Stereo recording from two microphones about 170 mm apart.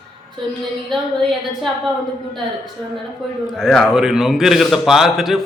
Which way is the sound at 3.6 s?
Centre (ahead or behind).